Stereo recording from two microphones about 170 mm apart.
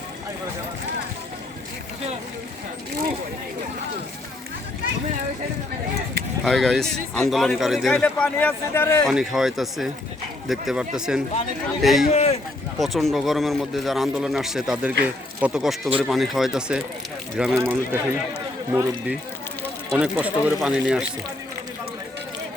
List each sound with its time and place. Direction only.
6.4 s speech: centre (ahead or behind)
9.0 s speech: centre (ahead or behind)
12.1 s speech: 40° left (ahead or behind)
12.8 s speech: centre (ahead or behind)
17.6 s speech: 15° right (ahead or behind)